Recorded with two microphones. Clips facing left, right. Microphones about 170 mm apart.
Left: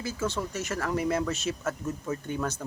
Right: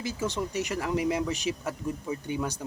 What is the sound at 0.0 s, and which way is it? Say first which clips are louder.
Speech: even; 15° right (ahead or behind).